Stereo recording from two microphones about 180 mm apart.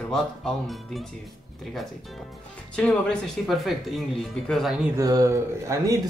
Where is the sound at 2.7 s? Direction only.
5° left (ahead or behind).